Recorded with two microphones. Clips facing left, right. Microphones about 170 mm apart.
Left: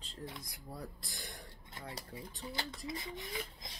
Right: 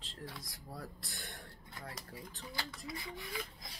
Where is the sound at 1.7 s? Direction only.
25° left (ahead or behind).